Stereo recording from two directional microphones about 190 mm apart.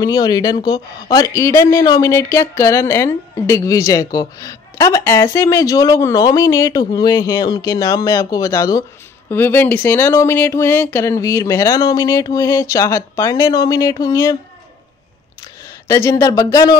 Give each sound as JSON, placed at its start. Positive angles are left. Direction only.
{"t": 0.0, "sound": "speech", "side_deg": 20}
{"t": 15.9, "sound": "speech", "side_deg": 15}